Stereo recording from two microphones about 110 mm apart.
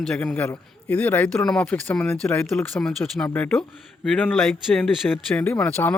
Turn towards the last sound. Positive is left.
turn(degrees=15)  # may be behind; listen again after turning